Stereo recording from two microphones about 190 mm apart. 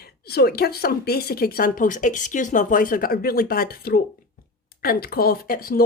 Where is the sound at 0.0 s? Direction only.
55° left (ahead or behind).